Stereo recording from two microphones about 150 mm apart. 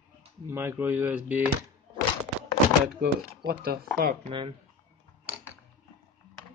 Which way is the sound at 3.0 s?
90° right.